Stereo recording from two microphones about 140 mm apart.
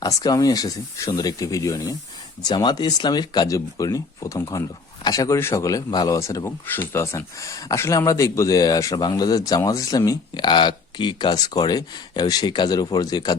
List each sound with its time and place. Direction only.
0.0 s speech: 25° left (ahead or behind)